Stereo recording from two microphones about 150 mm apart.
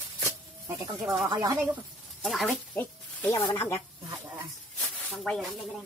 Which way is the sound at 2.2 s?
Centre (ahead or behind).